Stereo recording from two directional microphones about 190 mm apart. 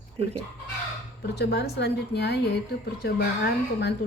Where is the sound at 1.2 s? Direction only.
60° left (ahead or behind).